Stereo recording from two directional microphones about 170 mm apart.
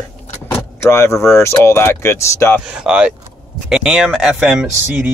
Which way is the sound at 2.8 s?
5° right (ahead or behind).